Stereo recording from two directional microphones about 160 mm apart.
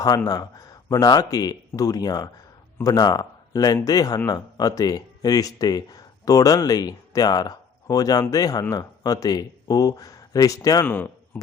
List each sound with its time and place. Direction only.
0.3 s a man's voice: 25° left (ahead or behind)
10.8 s speech: 10° left (ahead or behind)